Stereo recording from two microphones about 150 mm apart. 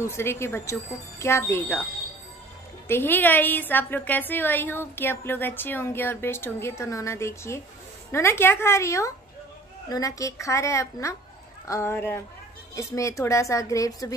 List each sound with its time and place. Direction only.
0.0 s a woman's voice: 15° left (ahead or behind)
2.9 s a woman's voice: 15° left (ahead or behind)